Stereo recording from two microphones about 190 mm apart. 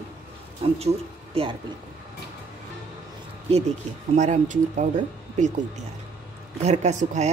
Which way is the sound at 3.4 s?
35° right (ahead or behind).